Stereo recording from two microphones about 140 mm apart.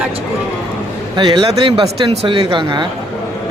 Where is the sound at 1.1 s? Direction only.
35° right (ahead or behind).